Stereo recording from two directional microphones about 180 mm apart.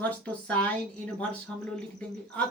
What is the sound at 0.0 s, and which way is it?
Speech, 10° left (ahead or behind).